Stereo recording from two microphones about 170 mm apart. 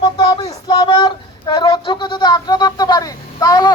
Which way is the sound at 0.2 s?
25° left (ahead or behind).